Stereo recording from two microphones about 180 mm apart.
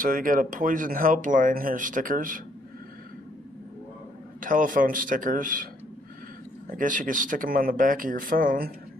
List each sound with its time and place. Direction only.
0.0 s speech: 50° right (ahead or behind)
4.4 s speech: 50° right (ahead or behind)
6.7 s speech: 45° right (ahead or behind)